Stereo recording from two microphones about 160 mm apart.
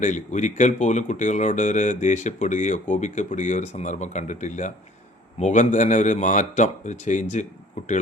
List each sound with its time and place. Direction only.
0.0 s speech: 50° left (ahead or behind)